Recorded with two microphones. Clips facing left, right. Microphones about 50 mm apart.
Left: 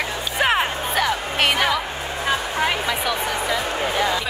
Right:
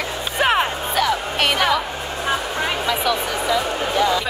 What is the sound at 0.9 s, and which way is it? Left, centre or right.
Music, centre.